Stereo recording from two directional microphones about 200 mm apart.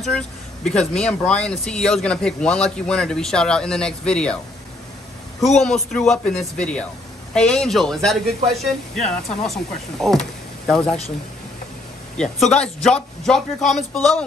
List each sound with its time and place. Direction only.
0.7 s speech: 5° left (ahead or behind)
5.6 s speech: 5° left (ahead or behind)
12.5 s speech: 5° left (ahead or behind)